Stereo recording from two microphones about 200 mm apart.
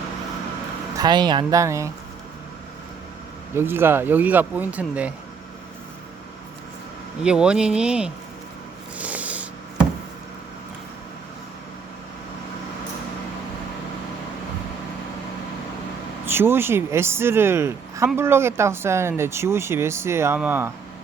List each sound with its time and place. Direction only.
0.9 s speech: 20° right (ahead or behind)
3.5 s speech: 10° right (ahead or behind)
7.2 s speech: 5° right (ahead or behind)
9.0 s a sound: 5° right (ahead or behind)
16.2 s speech: 10° right (ahead or behind)